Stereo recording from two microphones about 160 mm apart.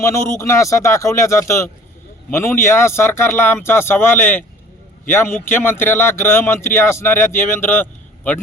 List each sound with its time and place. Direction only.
0.0 s speech: 20° left (ahead or behind)